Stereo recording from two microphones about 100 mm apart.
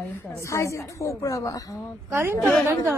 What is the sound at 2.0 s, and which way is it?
Speech, 25° right (ahead or behind).